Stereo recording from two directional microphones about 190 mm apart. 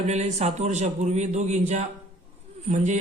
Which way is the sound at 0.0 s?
35° right (ahead or behind).